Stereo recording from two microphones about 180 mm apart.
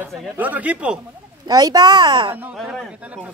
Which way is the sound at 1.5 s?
20° right (ahead or behind).